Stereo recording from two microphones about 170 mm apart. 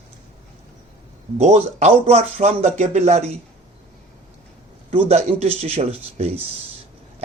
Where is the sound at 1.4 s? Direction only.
40° right (ahead or behind).